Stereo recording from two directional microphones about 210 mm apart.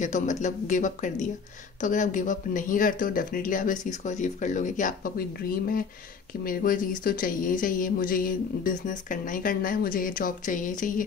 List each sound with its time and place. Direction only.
0.0 s speech: 35° left (ahead or behind)
6.4 s speech: 45° left (ahead or behind)